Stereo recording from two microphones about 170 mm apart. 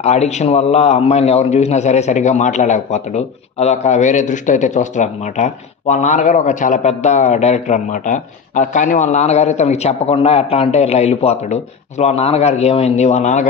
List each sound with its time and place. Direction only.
0.0 s a man's voice: 40° left (ahead or behind)